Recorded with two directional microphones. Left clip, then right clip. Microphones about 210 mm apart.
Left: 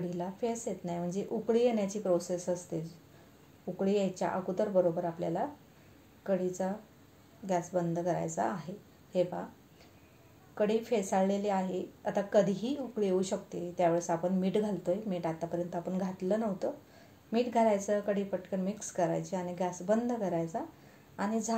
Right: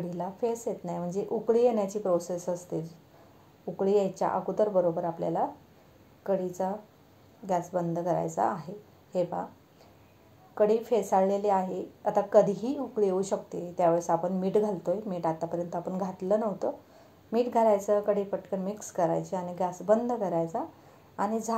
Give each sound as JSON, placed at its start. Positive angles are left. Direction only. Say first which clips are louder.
{"t": 0.1, "sound": "a woman's voice", "louder": "right 7 dB", "side_deg": -15}
{"t": 10.5, "sound": "a woman's voice", "louder": "right 5 dB", "side_deg": -15}